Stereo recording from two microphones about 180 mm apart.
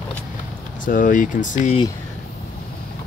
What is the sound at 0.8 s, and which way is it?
Speech, 50° left (ahead or behind).